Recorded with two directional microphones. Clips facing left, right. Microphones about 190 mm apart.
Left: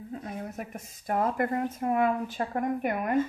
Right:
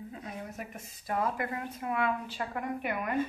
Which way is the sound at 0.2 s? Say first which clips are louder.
Left 4 dB; 50° left (ahead or behind).